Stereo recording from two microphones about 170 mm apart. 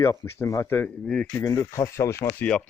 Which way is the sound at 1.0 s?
5° left (ahead or behind).